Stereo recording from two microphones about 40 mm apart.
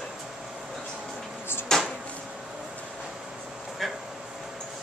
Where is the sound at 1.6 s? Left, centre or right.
Centre.